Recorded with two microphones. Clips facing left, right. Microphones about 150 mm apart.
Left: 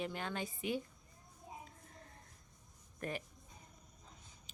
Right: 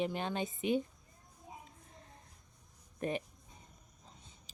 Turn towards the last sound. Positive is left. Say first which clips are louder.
# right 6 dB
turn(degrees=-20)  # may be behind; listen again after turning